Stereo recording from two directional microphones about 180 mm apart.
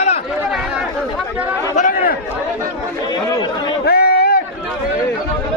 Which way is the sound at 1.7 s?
45° left (ahead or behind).